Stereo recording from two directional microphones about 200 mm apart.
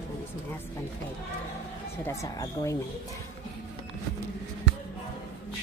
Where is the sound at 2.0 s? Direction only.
15° left (ahead or behind).